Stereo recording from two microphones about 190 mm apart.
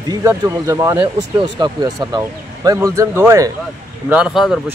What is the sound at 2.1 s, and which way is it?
A man's voice, 20° right (ahead or behind).